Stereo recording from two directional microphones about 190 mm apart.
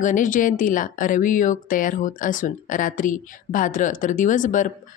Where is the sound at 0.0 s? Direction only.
45° left (ahead or behind).